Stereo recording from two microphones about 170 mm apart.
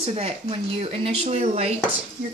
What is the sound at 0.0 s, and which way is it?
A child's voice, 35° right (ahead or behind).